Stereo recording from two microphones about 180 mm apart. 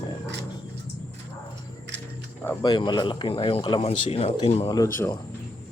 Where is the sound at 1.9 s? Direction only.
85° right.